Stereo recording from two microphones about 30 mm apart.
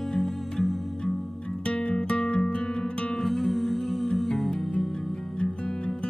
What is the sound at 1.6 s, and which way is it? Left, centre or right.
Music, left.